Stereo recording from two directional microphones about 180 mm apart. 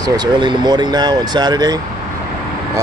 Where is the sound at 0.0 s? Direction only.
20° right (ahead or behind).